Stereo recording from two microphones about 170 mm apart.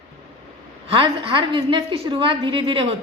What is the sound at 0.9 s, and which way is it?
A woman's voice, 30° right (ahead or behind).